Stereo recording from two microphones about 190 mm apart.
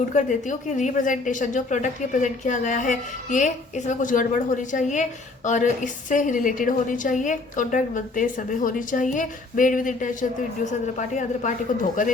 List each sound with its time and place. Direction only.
0.1 s a woman's voice: 40° left (ahead or behind)